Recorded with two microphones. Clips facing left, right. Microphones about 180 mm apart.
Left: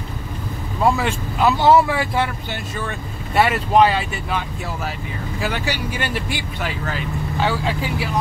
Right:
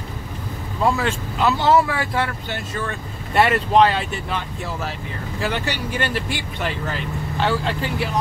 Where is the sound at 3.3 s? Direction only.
5° left (ahead or behind).